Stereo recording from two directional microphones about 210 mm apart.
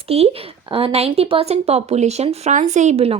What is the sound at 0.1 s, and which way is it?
Speech, 30° right (ahead or behind).